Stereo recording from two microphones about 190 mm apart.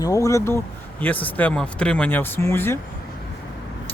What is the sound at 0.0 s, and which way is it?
Speech, 15° left (ahead or behind).